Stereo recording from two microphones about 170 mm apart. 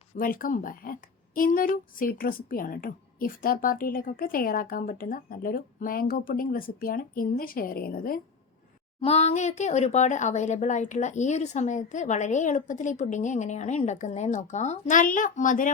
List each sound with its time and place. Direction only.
0.2 s speech: 55° left (ahead or behind)
9.0 s speech: 40° left (ahead or behind)